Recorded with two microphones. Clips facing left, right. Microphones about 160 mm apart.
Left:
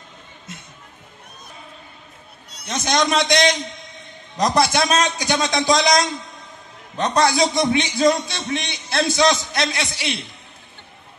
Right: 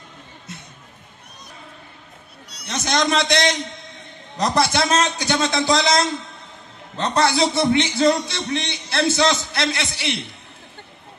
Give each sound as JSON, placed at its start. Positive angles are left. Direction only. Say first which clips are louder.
{"t": 2.9, "sound": "a man's voice", "louder": "left 1 dB", "side_deg": 20}